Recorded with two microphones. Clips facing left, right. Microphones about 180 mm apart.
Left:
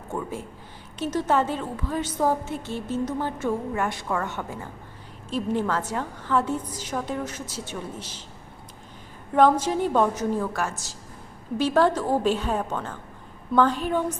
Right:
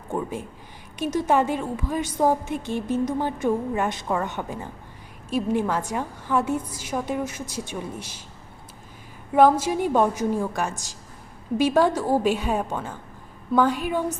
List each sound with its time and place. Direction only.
0.1 s a woman's voice: 15° right (ahead or behind)
9.3 s a woman's voice: 10° right (ahead or behind)